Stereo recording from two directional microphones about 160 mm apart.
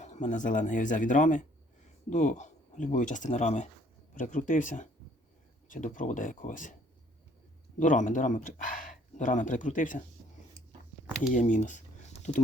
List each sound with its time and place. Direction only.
0.0 s speech: 50° left (ahead or behind)
7.8 s speech: 55° left (ahead or behind)
11.2 s speech: 55° left (ahead or behind)